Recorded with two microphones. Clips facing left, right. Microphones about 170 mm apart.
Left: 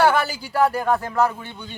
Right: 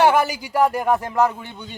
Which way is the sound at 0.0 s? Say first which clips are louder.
Right 2 dB; 15° right (ahead or behind).